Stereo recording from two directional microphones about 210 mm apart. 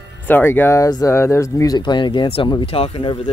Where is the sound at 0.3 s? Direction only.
10° left (ahead or behind).